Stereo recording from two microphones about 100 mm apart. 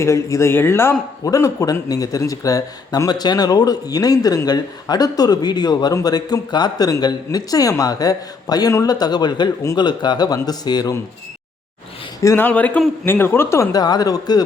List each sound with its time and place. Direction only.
0.0 s a man's voice: 30° left (ahead or behind)
12.2 s a man's voice: 30° left (ahead or behind)
12.5 s a man's voice: 15° left (ahead or behind)
13.7 s speech: 40° left (ahead or behind)